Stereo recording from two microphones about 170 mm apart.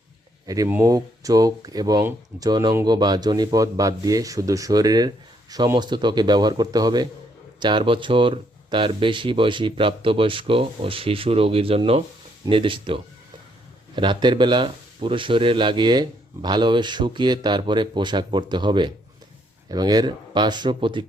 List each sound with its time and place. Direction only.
0.4 s speech: 20° right (ahead or behind)